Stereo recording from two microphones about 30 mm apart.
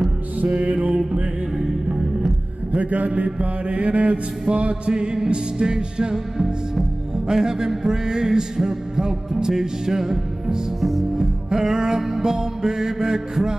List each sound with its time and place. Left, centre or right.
0.7 s music: right
1.9 s music: right
2.8 s a man's voice: right
3.3 s mantra: right
4.9 s music: right
6.1 s music: centre
10.8 s music: centre
11.1 s music: centre